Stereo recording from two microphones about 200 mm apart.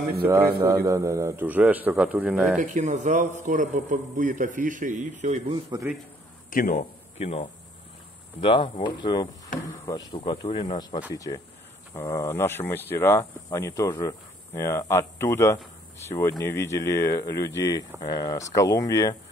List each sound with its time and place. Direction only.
0.3 s a man's voice: 15° right (ahead or behind)
2.6 s a man's voice: 40° right (ahead or behind)
6.5 s speech: 45° left (ahead or behind); by 19.1 s 15° left (ahead or behind)